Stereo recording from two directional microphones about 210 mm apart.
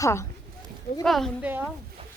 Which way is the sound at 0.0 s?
15° left (ahead or behind).